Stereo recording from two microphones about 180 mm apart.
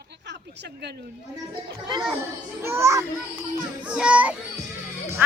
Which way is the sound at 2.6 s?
15° right (ahead or behind).